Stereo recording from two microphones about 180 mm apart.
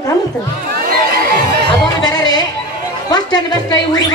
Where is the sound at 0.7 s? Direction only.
55° right (ahead or behind).